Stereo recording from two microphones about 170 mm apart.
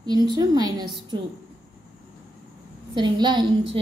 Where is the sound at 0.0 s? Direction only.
25° right (ahead or behind).